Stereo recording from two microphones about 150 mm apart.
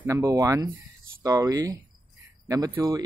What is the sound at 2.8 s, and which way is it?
Speech, 20° right (ahead or behind).